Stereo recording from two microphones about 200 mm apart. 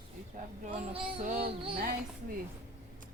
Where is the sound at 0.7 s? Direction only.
30° right (ahead or behind).